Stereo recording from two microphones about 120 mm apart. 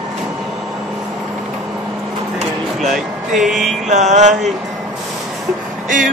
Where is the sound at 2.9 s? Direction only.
Centre (ahead or behind).